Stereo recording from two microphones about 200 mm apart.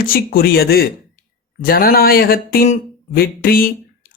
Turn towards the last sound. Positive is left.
turn(degrees=45)  # may be behind; listen again after turning